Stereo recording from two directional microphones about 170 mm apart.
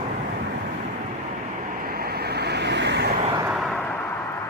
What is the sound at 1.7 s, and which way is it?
Vehicle, 60° right (ahead or behind).